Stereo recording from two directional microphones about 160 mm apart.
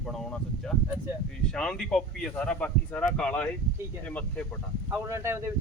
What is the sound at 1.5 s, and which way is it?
Speech, 5° left (ahead or behind).